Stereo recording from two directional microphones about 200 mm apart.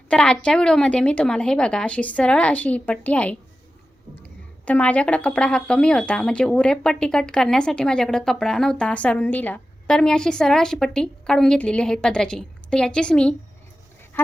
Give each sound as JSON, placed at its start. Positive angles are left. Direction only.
{"t": 0.1, "sound": "speech", "side_deg": 5}